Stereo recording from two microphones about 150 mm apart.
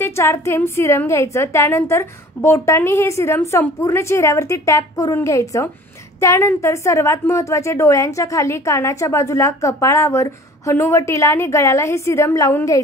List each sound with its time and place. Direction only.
0.0 s a woman's voice: 15° left (ahead or behind)